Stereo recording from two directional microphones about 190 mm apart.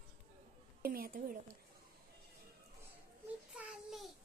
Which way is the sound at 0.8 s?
50° right (ahead or behind).